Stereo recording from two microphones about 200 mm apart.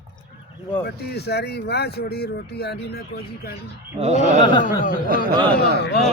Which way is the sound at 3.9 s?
30° right (ahead or behind).